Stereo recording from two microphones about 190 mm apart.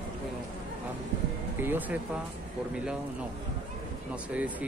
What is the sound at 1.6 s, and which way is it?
Speech, 10° right (ahead or behind).